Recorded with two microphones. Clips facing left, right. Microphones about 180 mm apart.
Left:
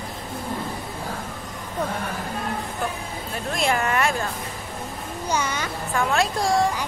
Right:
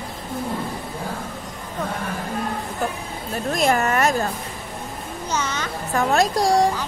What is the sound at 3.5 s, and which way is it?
Speech, 45° right (ahead or behind).